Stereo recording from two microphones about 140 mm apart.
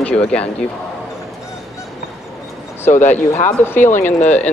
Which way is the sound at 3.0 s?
15° left (ahead or behind).